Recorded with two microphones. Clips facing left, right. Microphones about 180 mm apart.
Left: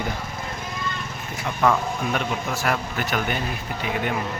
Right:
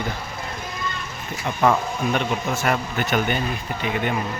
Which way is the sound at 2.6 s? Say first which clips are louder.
Right 2 dB; centre (ahead or behind).